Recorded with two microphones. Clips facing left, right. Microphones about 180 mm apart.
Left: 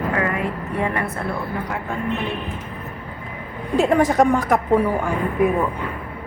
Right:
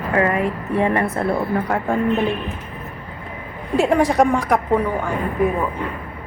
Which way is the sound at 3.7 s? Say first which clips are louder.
Even; centre (ahead or behind).